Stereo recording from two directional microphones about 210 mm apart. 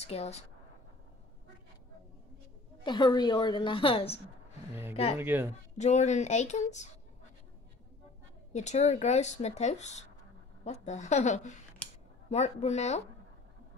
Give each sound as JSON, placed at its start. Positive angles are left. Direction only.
{"t": 0.0, "sound": "speech", "side_deg": 30}
{"t": 2.8, "sound": "a woman's voice", "side_deg": 20}
{"t": 5.2, "sound": "speech", "side_deg": -10}
{"t": 5.8, "sound": "speech", "side_deg": 35}
{"t": 8.5, "sound": "speech", "side_deg": 30}